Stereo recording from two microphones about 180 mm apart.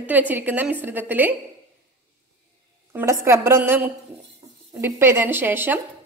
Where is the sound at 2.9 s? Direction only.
15° right (ahead or behind).